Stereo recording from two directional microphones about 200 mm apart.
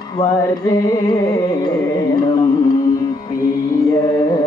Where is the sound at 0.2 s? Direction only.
15° left (ahead or behind).